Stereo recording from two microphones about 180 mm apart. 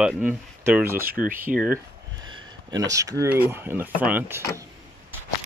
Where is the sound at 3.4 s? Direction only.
10° right (ahead or behind).